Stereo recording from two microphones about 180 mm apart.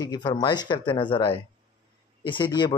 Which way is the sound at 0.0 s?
20° left (ahead or behind).